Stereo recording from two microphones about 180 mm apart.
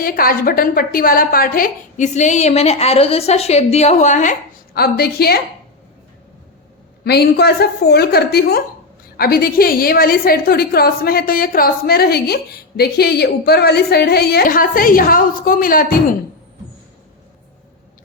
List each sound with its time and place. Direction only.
0.0 s a woman's voice: 55° left (ahead or behind)
7.0 s a woman's voice: 65° left (ahead or behind)